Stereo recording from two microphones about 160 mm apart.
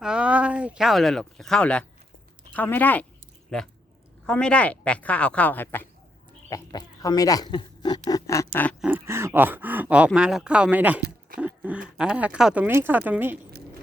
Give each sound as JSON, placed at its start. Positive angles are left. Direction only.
{"t": 0.0, "sound": "speech", "side_deg": -5}
{"t": 4.3, "sound": "speech", "side_deg": 5}
{"t": 6.5, "sound": "speech", "side_deg": 25}
{"t": 7.5, "sound": "a sound", "side_deg": 25}
{"t": 8.8, "sound": "speech", "side_deg": -15}